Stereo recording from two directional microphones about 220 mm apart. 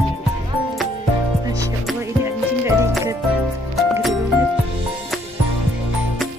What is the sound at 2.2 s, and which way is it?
Music, 10° right (ahead or behind).